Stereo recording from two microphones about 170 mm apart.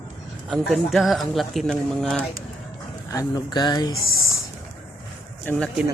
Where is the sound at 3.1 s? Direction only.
25° left (ahead or behind).